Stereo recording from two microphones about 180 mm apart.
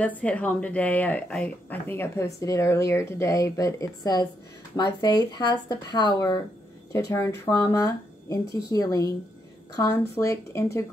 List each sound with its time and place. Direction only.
0.0 s speech: 10° left (ahead or behind)